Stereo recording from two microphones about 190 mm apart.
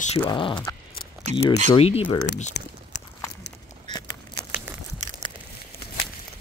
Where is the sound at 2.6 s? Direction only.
60° left (ahead or behind).